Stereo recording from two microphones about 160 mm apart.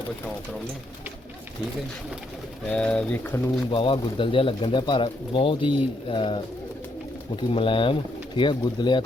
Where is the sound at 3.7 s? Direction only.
35° left (ahead or behind).